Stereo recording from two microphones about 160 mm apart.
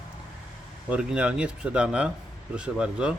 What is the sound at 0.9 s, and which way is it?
Speech, 5° right (ahead or behind).